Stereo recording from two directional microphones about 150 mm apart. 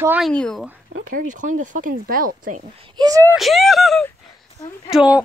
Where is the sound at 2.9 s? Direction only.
25° right (ahead or behind).